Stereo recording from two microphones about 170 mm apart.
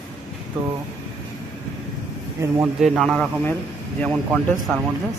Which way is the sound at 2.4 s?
15° right (ahead or behind).